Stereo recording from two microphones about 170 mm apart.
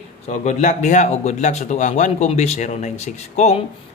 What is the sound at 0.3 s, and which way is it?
A man's voice, 45° left (ahead or behind).